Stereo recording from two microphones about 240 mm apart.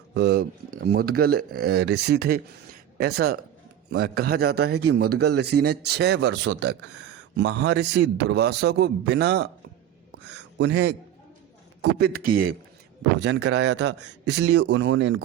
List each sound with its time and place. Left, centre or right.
0.1 s speech: right
3.8 s a man's voice: right